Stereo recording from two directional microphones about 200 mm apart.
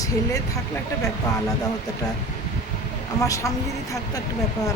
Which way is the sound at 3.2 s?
15° left (ahead or behind).